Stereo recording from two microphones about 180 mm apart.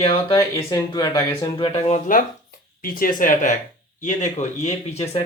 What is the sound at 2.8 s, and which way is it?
Speech, 50° left (ahead or behind).